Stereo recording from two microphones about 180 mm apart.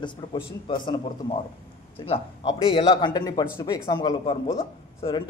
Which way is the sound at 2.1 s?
30° left (ahead or behind).